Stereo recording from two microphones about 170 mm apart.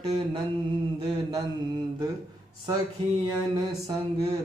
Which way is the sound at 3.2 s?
25° right (ahead or behind).